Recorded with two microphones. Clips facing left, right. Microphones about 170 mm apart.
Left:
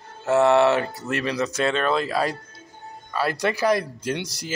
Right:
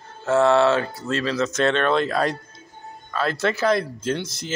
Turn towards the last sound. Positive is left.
turn(degrees=15)  # may be behind; listen again after turning